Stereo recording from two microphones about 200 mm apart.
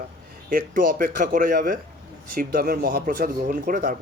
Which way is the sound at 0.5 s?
45° right (ahead or behind).